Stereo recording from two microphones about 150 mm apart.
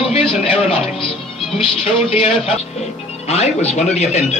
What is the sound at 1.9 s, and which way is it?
A man's voice, 40° left (ahead or behind).